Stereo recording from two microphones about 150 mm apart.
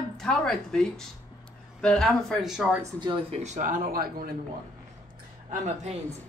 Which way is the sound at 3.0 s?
30° right (ahead or behind).